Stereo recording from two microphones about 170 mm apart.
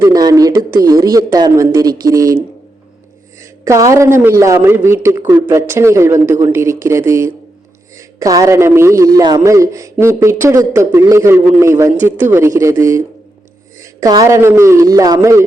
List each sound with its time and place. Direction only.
0.0 s a man's voice: 20° right (ahead or behind)
3.4 s a man's voice: 20° right (ahead or behind)